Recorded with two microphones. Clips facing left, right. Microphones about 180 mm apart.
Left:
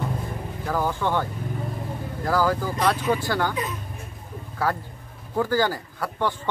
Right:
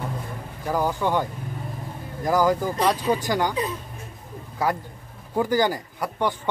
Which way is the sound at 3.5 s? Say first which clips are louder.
Right 2 dB; 30° right (ahead or behind).